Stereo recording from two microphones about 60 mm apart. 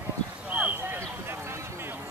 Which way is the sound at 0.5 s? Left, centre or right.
Right.